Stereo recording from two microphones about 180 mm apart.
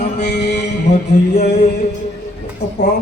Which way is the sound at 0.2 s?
65° left (ahead or behind).